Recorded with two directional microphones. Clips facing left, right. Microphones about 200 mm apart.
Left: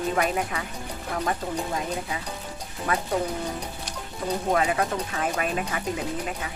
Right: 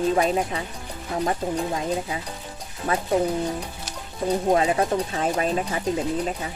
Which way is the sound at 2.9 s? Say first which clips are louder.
Right 2 dB; 25° right (ahead or behind).